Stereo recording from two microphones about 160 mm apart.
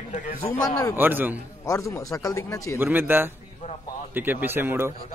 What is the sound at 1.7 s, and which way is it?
A man's voice, 20° left (ahead or behind).